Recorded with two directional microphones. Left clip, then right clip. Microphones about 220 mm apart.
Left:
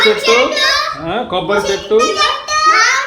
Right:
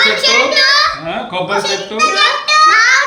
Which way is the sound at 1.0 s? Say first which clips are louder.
Left 2 dB; 25° left (ahead or behind).